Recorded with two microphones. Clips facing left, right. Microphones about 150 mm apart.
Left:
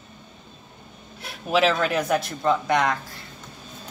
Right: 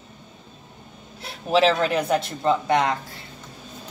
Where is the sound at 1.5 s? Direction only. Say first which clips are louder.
Right 2 dB; 30° right (ahead or behind).